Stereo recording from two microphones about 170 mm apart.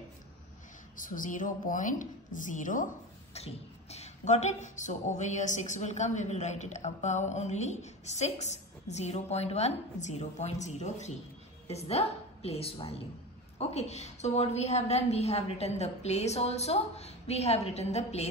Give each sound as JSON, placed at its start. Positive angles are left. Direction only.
{"t": 0.9, "sound": "speech", "side_deg": 50}
{"t": 3.3, "sound": "a woman's voice", "side_deg": 40}